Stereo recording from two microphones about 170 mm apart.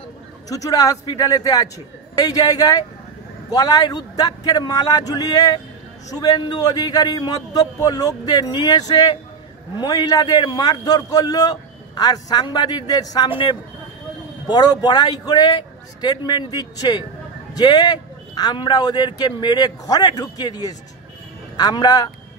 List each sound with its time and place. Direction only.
0.5 s a man's voice: 20° left (ahead or behind)